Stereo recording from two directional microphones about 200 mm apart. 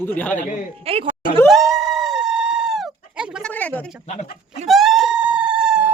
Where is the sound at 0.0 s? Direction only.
10° left (ahead or behind).